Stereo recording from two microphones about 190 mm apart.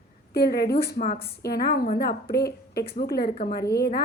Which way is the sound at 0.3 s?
55° left (ahead or behind).